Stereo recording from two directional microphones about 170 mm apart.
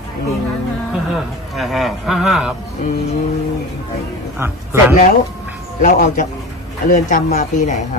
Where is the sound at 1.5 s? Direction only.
Centre (ahead or behind).